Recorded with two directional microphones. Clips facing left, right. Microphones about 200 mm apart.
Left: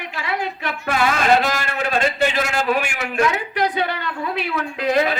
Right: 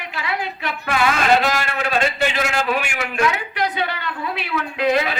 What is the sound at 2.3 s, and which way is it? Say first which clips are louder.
A man's voice: left 1 dB; 40° left (ahead or behind).